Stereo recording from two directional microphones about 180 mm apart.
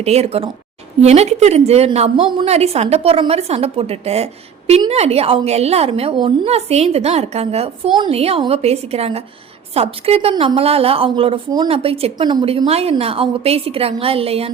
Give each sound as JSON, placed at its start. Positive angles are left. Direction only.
{"t": 0.0, "sound": "a woman's voice", "side_deg": -35}